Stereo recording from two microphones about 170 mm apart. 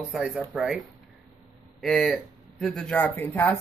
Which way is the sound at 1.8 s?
Centre (ahead or behind).